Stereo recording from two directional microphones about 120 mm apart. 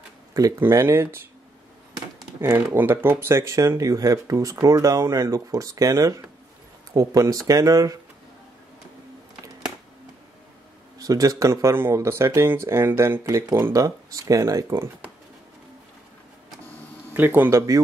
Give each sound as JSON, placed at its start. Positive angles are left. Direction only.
{"t": 0.3, "sound": "speech", "side_deg": -30}
{"t": 11.0, "sound": "speech", "side_deg": -30}
{"t": 17.1, "sound": "speech", "side_deg": -15}